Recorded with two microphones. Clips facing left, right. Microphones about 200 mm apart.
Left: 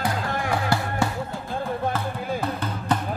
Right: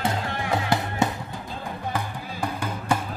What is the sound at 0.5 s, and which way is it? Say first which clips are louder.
Music: right 1 dB; 20° right (ahead or behind).